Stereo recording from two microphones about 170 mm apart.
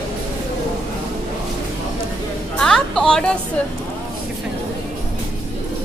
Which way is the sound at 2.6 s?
5° left (ahead or behind).